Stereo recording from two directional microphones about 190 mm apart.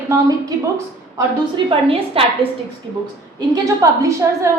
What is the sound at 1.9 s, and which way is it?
Speech, 30° right (ahead or behind).